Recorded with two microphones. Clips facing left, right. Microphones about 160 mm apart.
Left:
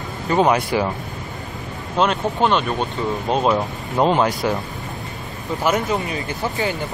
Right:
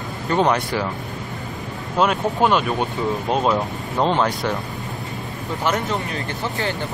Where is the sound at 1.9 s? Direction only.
5° right (ahead or behind).